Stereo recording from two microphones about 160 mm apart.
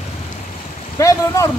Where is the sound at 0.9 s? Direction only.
20° left (ahead or behind).